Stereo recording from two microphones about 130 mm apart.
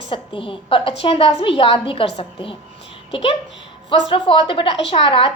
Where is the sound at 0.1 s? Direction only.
40° left (ahead or behind).